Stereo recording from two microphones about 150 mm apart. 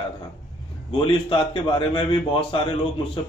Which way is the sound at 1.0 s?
35° left (ahead or behind).